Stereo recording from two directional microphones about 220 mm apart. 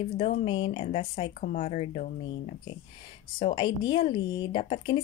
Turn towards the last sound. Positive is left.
turn(degrees=25)  # may be behind; listen again after turning